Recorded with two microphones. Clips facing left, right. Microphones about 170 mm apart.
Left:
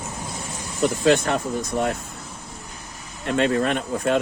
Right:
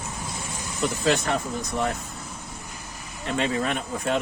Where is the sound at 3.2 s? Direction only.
60° left (ahead or behind).